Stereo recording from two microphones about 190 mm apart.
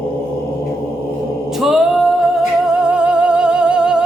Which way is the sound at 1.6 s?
Centre (ahead or behind).